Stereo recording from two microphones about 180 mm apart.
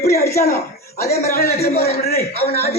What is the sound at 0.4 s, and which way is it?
Speech, 45° left (ahead or behind).